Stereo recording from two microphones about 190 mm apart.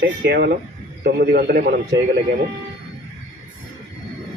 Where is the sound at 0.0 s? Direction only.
60° right (ahead or behind).